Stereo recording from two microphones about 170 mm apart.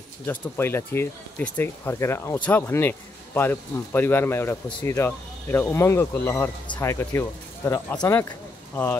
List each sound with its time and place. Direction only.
0.3 s speech: 15° left (ahead or behind)